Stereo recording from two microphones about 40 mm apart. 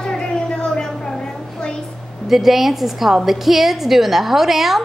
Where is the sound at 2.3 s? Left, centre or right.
Centre.